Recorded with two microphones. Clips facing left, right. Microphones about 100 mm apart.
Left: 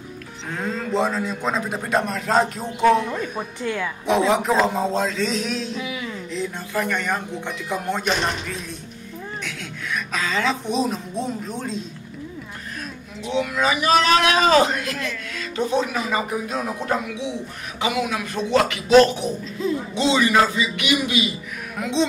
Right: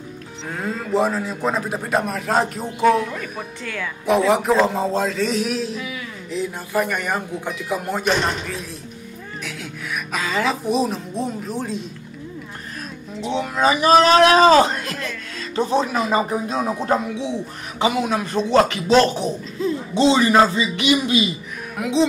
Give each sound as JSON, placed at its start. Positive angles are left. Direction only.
{"t": 0.5, "sound": "a man's voice", "side_deg": -5}
{"t": 3.6, "sound": "a woman's voice", "side_deg": 20}
{"t": 4.0, "sound": "a man's voice", "side_deg": 0}
{"t": 5.8, "sound": "speech", "side_deg": 20}
{"t": 6.3, "sound": "speech", "side_deg": -5}
{"t": 9.4, "sound": "a man's voice", "side_deg": -5}
{"t": 13.2, "sound": "a man's voice", "side_deg": -35}
{"t": 21.7, "sound": "a man's voice", "side_deg": -5}